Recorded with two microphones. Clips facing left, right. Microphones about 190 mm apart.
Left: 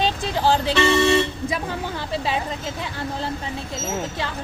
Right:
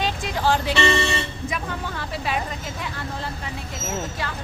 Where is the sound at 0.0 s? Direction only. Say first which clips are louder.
Left 3 dB; 30° left (ahead or behind).